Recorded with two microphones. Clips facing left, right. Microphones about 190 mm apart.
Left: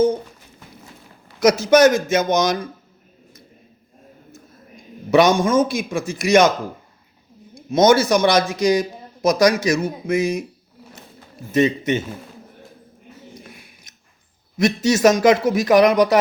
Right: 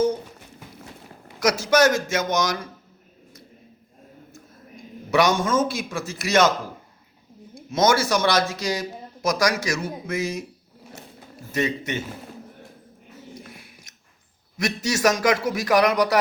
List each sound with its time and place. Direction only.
1.4 s speech: 20° left (ahead or behind)
5.1 s a man's voice: 20° left (ahead or behind)
7.5 s a man's voice: 20° left (ahead or behind)
11.5 s speech: 20° left (ahead or behind)
14.6 s speech: 20° left (ahead or behind)